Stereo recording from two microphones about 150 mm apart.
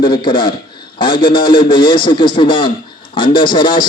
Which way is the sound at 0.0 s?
30° left (ahead or behind).